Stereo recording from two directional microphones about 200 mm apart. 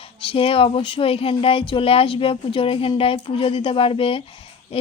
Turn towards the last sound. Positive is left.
turn(degrees=25)  # may be behind; listen again after turning